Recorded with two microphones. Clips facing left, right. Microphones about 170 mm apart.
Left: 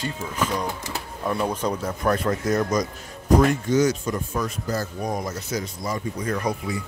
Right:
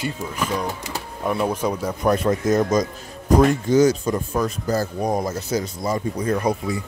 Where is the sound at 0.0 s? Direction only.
10° right (ahead or behind).